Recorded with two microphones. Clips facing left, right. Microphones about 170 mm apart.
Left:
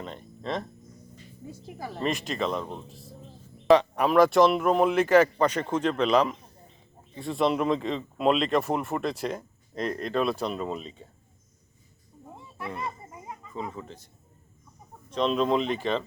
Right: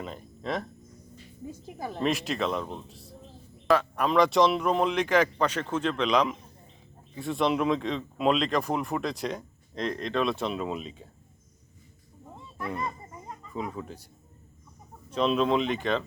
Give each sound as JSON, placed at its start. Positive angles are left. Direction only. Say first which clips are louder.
{"t": 0.0, "sound": "speech", "louder": "even", "side_deg": -5}
{"t": 1.5, "sound": "speech", "louder": "right 1 dB", "side_deg": -15}
{"t": 2.0, "sound": "speech", "louder": "right 1 dB", "side_deg": 0}
{"t": 12.7, "sound": "children playing", "louder": "right 1 dB", "side_deg": 10}
{"t": 13.5, "sound": "speech", "louder": "right 2 dB", "side_deg": -5}
{"t": 15.1, "sound": "speech", "louder": "even", "side_deg": -5}